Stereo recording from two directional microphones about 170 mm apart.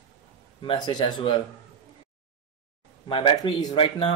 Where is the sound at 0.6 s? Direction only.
25° left (ahead or behind).